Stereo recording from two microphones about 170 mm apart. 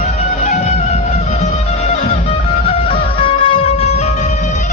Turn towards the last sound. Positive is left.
turn(degrees=35)  # may be behind; listen again after turning